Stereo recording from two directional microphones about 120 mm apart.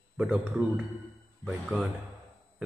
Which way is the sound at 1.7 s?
15° right (ahead or behind).